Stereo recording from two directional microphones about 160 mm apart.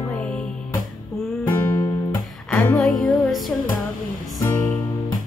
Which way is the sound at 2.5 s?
5° left (ahead or behind).